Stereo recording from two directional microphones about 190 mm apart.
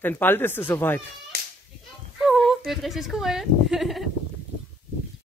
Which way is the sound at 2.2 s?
Centre (ahead or behind).